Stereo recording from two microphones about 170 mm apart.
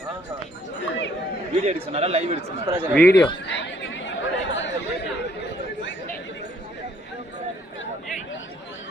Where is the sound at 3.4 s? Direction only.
90° left.